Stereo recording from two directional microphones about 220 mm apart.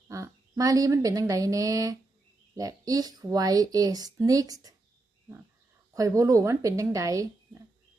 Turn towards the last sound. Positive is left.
turn(degrees=-15)  # may be behind; listen again after turning